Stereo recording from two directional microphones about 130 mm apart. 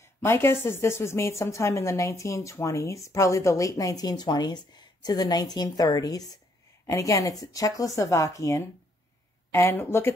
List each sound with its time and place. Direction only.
0.2 s a woman's voice: 20° left (ahead or behind)